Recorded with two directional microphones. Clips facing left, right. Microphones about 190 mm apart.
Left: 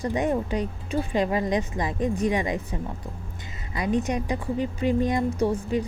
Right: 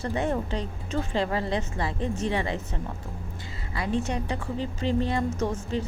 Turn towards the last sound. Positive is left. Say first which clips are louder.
# left 4 dB
turn(degrees=10)  # may be behind; listen again after turning